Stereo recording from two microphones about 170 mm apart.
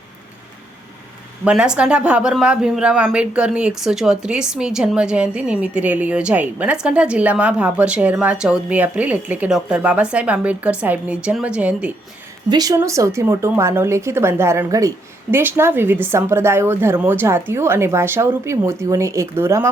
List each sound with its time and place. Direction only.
1.5 s speech: 5° right (ahead or behind)
12.5 s speech: 20° right (ahead or behind)